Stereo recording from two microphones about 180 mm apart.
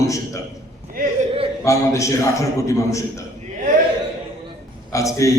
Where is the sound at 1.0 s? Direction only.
55° right (ahead or behind).